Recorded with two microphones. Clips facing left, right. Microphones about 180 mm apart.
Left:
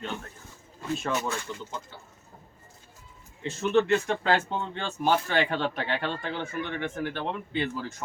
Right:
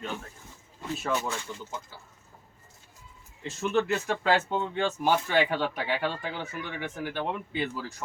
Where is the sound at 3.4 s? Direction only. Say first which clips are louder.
Left 4 dB; centre (ahead or behind).